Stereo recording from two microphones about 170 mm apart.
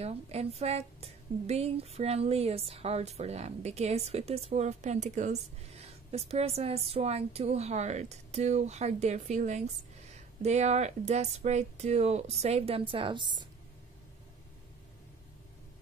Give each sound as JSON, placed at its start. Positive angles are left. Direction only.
{"t": 0.0, "sound": "a woman's voice", "side_deg": -35}